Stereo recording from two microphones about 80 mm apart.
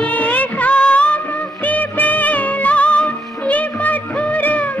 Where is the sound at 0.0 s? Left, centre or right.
Centre.